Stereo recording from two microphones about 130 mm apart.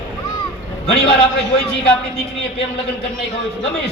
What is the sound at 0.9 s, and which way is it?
Speech, 50° left (ahead or behind).